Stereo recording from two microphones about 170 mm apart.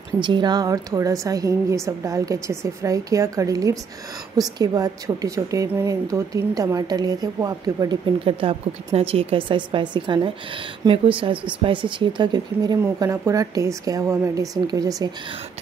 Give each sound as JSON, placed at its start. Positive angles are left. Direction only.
{"t": 0.2, "sound": "a woman's voice", "side_deg": -25}
{"t": 12.8, "sound": "a woman's voice", "side_deg": -15}